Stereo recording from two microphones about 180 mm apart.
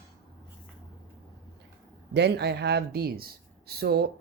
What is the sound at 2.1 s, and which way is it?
Speech, 70° right (ahead or behind).